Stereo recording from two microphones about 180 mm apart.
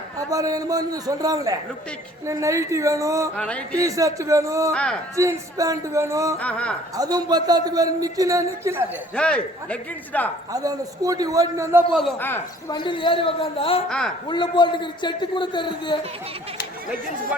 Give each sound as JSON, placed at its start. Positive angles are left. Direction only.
{"t": 0.3, "sound": "a man's voice", "side_deg": -20}
{"t": 3.3, "sound": "speech", "side_deg": 5}
{"t": 3.8, "sound": "speech", "side_deg": -20}
{"t": 4.7, "sound": "speech", "side_deg": 5}
{"t": 5.1, "sound": "speech", "side_deg": -15}
{"t": 6.4, "sound": "speech", "side_deg": 5}
{"t": 6.9, "sound": "a man's voice", "side_deg": -20}
{"t": 9.1, "sound": "speech", "side_deg": 5}
{"t": 10.5, "sound": "a man's voice", "side_deg": -20}
{"t": 12.2, "sound": "speech", "side_deg": 10}
{"t": 12.7, "sound": "a man's voice", "side_deg": 25}